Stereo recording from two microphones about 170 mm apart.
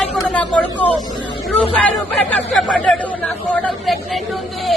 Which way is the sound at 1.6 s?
10° left (ahead or behind).